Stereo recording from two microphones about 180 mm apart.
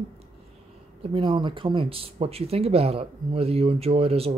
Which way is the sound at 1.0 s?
30° right (ahead or behind).